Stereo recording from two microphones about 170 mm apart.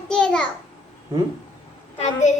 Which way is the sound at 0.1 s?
5° left (ahead or behind).